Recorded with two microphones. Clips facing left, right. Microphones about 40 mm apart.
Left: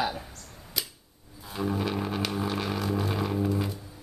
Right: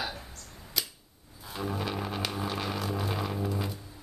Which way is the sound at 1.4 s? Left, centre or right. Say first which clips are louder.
Left 4 dB; centre.